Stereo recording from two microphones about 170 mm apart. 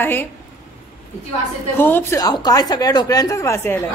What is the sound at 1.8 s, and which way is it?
A woman's voice, 10° left (ahead or behind).